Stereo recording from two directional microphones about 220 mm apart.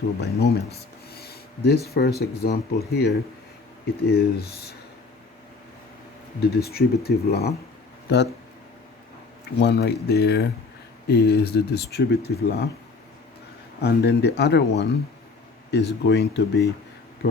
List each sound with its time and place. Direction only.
0.2 s speech: 50° left (ahead or behind)
6.4 s speech: 45° left (ahead or behind)
9.6 s speech: 50° left (ahead or behind)
13.8 s speech: 50° left (ahead or behind)